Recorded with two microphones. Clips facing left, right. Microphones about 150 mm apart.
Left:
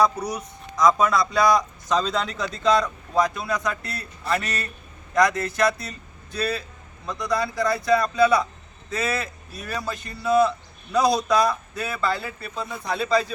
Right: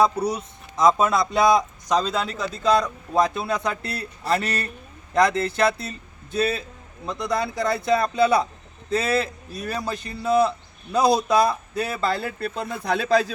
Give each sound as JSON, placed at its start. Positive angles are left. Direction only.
{"t": 0.0, "sound": "speech", "side_deg": -25}
{"t": 1.9, "sound": "a man's voice", "side_deg": -10}
{"t": 3.2, "sound": "speech", "side_deg": -25}
{"t": 12.0, "sound": "speech", "side_deg": -50}